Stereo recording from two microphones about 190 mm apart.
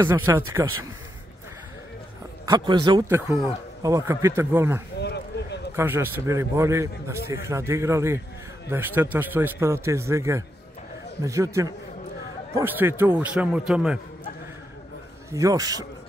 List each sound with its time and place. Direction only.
0.0 s a man's voice: 15° right (ahead or behind)
2.4 s a man's voice: 20° right (ahead or behind)
4.9 s a sound: 60° left (ahead or behind)
5.8 s a man's voice: 15° right (ahead or behind)
15.3 s a man's voice: 20° right (ahead or behind)